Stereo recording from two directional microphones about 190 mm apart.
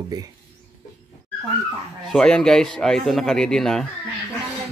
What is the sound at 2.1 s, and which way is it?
Speech, 5° left (ahead or behind).